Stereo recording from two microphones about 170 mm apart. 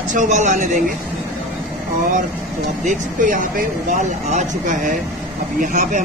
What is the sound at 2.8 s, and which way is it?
Speech, 50° right (ahead or behind).